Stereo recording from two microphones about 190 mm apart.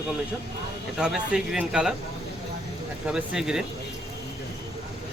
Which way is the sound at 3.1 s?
5° right (ahead or behind).